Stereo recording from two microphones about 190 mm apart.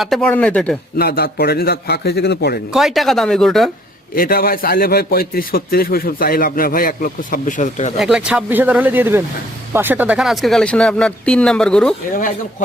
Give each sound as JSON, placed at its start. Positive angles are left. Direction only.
{"t": 0.0, "sound": "speech", "side_deg": 0}
{"t": 0.9, "sound": "a man's voice", "side_deg": 55}
{"t": 2.7, "sound": "speech", "side_deg": 0}
{"t": 4.1, "sound": "a man's voice", "side_deg": 50}
{"t": 7.9, "sound": "speech", "side_deg": -5}
{"t": 12.1, "sound": "a man's voice", "side_deg": 45}